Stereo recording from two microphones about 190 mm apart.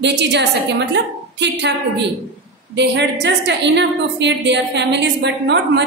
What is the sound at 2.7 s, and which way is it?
A woman's voice, 65° right (ahead or behind).